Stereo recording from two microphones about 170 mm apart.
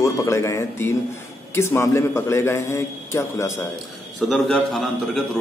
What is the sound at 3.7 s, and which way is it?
A man's voice, centre (ahead or behind).